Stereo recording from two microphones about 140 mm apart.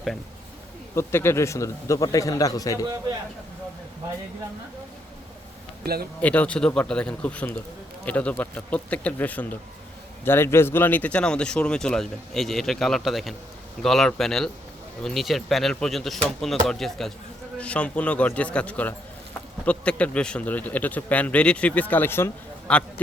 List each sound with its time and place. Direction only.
0.9 s speech: 20° left (ahead or behind)
5.8 s speech: 90° right
6.1 s speech: 10° left (ahead or behind)